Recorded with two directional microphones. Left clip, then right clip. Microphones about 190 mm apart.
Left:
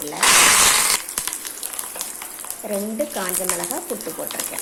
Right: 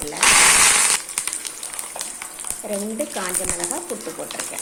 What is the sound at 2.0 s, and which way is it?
Speech, centre (ahead or behind).